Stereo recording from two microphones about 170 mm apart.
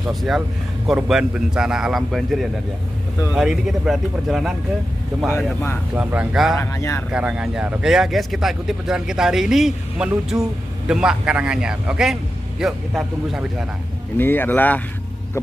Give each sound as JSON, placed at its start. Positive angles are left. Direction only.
{"t": 0.1, "sound": "speech", "side_deg": 0}
{"t": 5.9, "sound": "speech", "side_deg": -5}
{"t": 6.5, "sound": "speech", "side_deg": 15}
{"t": 7.1, "sound": "speech", "side_deg": -5}
{"t": 14.1, "sound": "speech", "side_deg": 10}